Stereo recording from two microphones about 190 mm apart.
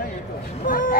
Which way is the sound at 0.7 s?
45° left (ahead or behind).